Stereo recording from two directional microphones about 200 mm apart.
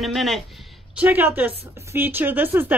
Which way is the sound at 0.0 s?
Centre (ahead or behind).